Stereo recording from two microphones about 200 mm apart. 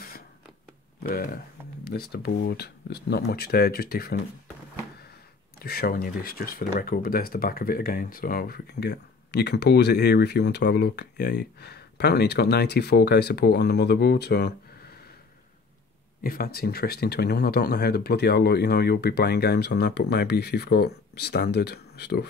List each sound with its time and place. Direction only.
1.0 s speech: 45° left (ahead or behind)
5.6 s speech: 50° left (ahead or behind)
16.2 s speech: 50° left (ahead or behind)